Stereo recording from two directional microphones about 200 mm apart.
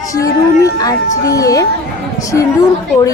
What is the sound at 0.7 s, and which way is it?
Speech, 15° left (ahead or behind).